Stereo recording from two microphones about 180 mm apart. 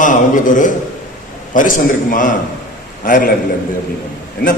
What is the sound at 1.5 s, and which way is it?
A man's voice, 45° left (ahead or behind).